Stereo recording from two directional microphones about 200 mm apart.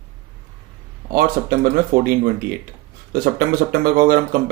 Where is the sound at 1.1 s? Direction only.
45° right (ahead or behind).